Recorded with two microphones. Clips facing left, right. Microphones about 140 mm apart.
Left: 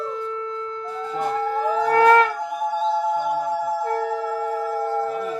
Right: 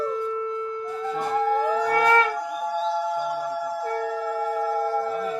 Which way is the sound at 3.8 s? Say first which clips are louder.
Left 3 dB; 20° left (ahead or behind).